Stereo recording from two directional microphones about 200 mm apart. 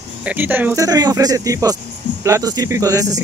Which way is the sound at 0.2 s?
10° right (ahead or behind).